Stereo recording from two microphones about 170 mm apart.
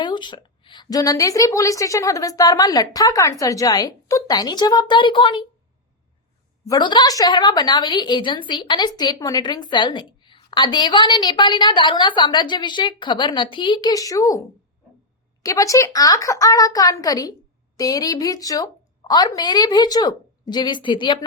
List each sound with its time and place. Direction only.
0.0 s a woman's voice: 25° left (ahead or behind)
6.7 s a woman's voice: 25° left (ahead or behind)
15.4 s a woman's voice: 20° left (ahead or behind)